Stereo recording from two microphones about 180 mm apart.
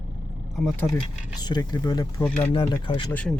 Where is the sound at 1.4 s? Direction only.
25° left (ahead or behind).